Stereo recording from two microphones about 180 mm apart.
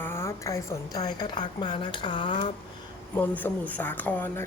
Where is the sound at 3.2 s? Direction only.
10° left (ahead or behind).